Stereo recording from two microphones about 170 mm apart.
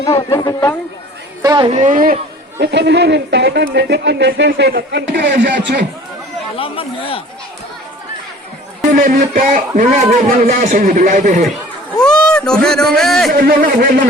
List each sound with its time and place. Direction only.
0.0 s speech: 20° left (ahead or behind)
1.4 s speech: 25° right (ahead or behind)
1.7 s speech: 45° right (ahead or behind)
2.6 s speech: 90° right
6.6 s speech: 35° left (ahead or behind)
8.8 s speech: 50° right (ahead or behind)
12.0 s a man's voice: 5° left (ahead or behind)
13.3 s speech: 55° right (ahead or behind)